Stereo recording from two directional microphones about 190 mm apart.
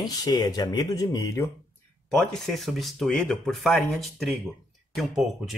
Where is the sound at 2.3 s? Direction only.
Centre (ahead or behind).